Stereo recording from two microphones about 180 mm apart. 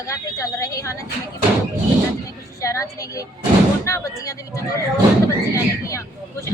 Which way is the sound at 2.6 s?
15° left (ahead or behind).